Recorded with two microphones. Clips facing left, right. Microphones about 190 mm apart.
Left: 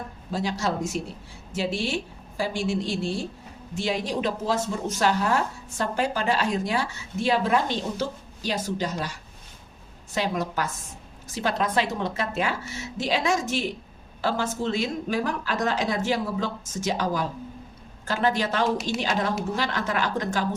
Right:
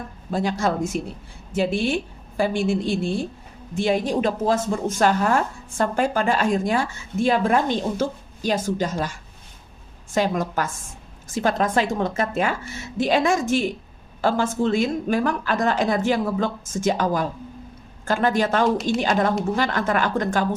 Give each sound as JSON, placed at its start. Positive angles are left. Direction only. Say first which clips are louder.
{"t": 0.3, "sound": "a woman's voice", "louder": "right 4 dB", "side_deg": -50}